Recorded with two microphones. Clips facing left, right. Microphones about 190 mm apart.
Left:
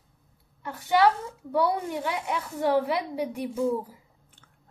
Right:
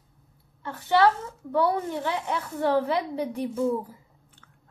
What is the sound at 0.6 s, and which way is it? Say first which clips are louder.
Speech: right 1 dB; 10° left (ahead or behind).